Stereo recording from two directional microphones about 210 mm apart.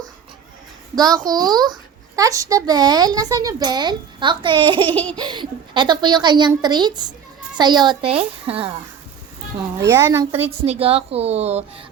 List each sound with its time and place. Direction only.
0.9 s a woman's voice: 20° right (ahead or behind)
9.7 s a woman's voice: 15° right (ahead or behind)
10.7 s a child's voice: 30° right (ahead or behind)